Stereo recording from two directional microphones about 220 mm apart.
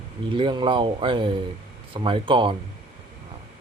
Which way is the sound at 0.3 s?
20° right (ahead or behind).